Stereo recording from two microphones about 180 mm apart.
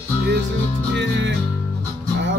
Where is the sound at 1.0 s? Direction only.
75° right (ahead or behind).